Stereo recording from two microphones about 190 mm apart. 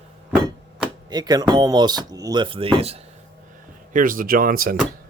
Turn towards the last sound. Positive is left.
turn(degrees=-50)  # may be behind; listen again after turning